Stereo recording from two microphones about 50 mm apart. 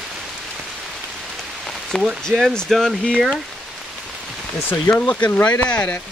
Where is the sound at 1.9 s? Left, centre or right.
Centre.